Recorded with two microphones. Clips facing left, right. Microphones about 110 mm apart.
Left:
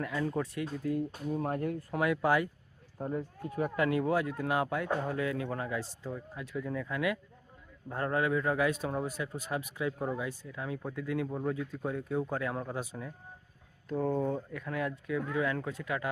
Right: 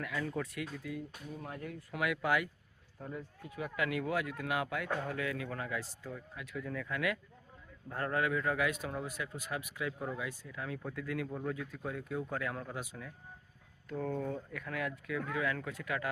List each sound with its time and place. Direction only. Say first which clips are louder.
0.0 s speech: left 5 dB; 25° left (ahead or behind); by 2.0 s 45° left (ahead or behind)
2.0 s speech: left 4 dB; 30° left (ahead or behind)